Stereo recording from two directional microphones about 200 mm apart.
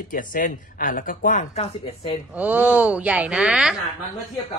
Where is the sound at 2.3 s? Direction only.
10° right (ahead or behind).